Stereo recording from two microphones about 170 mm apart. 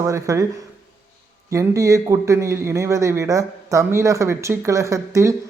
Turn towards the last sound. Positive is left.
turn(degrees=-20)  # may be behind; listen again after turning